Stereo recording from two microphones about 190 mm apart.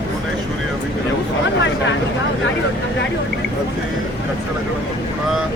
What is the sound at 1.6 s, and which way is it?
Speech, 75° left (ahead or behind).